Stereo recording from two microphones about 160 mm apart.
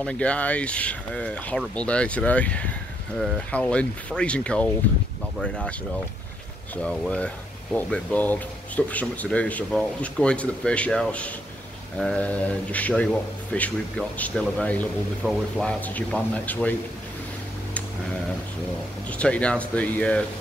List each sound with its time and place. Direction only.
0.0 s a man's voice: 5° left (ahead or behind)
6.8 s a man's voice: 5° left (ahead or behind)
19.0 s a man's voice: 10° left (ahead or behind)